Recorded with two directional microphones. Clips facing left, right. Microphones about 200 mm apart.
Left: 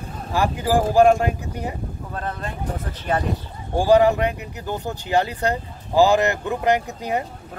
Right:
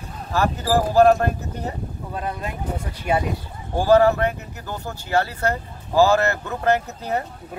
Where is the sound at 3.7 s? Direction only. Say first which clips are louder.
Even; 15° left (ahead or behind).